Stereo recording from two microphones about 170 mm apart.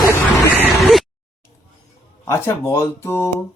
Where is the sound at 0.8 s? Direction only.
Centre (ahead or behind).